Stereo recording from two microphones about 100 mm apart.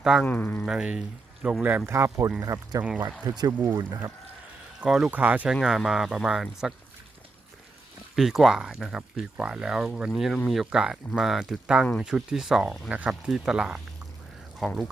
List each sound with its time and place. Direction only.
0.0 s speech: 5° right (ahead or behind)
0.3 s speech: 20° left (ahead or behind)
0.6 s speech: 5° right (ahead or behind)
1.9 s speech: 25° right (ahead or behind)
4.8 s speech: 5° right (ahead or behind)
5.5 s speech: 5° right (ahead or behind)
8.1 s speech: centre (ahead or behind)